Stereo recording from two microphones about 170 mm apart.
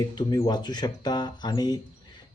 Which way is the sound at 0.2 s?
25° left (ahead or behind).